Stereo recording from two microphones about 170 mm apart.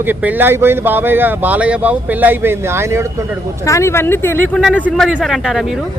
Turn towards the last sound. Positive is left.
turn(degrees=0)  # may be behind; listen again after turning